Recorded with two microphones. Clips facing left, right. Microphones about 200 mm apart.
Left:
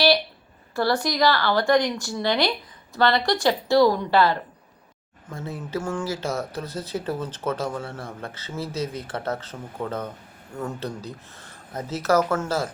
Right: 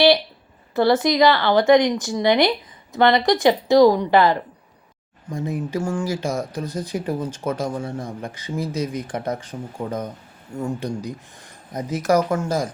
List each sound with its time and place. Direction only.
0.8 s speech: 20° right (ahead or behind)